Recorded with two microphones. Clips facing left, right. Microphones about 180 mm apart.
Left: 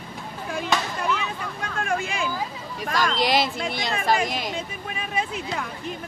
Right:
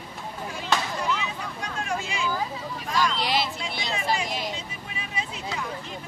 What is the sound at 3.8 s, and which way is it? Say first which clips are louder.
Speech: left 4 dB; 55° left (ahead or behind).